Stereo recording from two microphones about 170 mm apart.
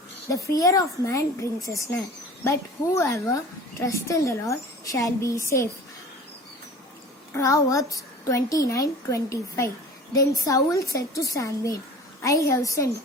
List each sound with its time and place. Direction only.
0.3 s a woman's voice: 20° left (ahead or behind)
3.0 s a woman's voice: 20° left (ahead or behind)
7.3 s a woman's voice: 20° left (ahead or behind)